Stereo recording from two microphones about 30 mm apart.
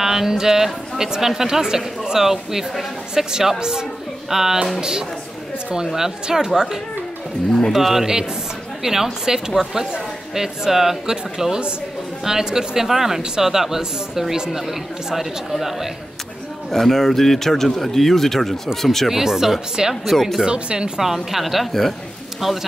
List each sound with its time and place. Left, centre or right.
0.0 s a sound: centre
0.9 s a woman's voice: centre
4.3 s a woman's voice: centre
4.7 s speech: right
6.3 s a woman's voice: centre
16.7 s speech: centre
19.0 s a woman's voice: centre
20.1 s speech: centre
20.4 s speech: right
21.0 s a woman's voice: centre